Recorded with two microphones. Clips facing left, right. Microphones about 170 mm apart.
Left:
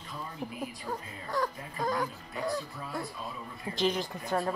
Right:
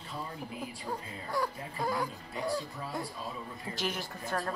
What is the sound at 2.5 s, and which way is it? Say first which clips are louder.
Speech: even; 30° right (ahead or behind).